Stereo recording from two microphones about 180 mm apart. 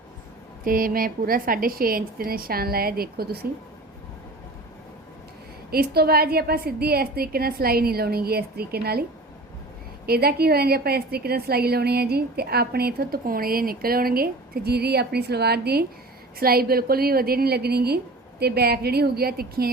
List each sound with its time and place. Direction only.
0.6 s a woman's voice: 50° right (ahead or behind)
5.7 s a woman's voice: 60° right (ahead or behind)
10.1 s a woman's voice: 60° right (ahead or behind)